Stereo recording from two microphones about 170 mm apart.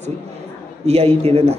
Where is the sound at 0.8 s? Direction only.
35° right (ahead or behind).